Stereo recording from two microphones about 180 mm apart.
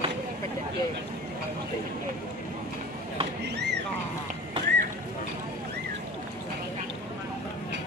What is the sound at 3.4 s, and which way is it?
Speech, 70° right (ahead or behind).